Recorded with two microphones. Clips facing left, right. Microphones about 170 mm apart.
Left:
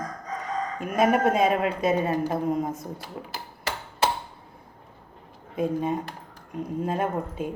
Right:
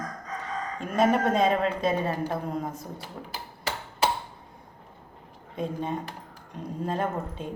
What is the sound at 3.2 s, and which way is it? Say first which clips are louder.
Speech: left 2 dB; 15° left (ahead or behind).